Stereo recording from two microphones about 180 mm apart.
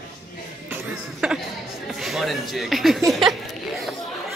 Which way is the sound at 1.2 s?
5° right (ahead or behind).